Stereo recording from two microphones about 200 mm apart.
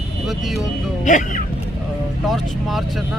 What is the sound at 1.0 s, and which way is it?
Speech, 40° left (ahead or behind).